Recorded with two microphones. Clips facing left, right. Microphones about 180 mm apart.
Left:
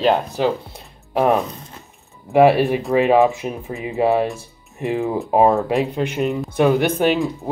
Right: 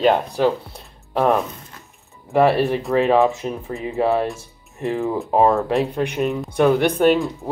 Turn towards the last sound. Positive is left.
turn(degrees=5)  # may be behind; listen again after turning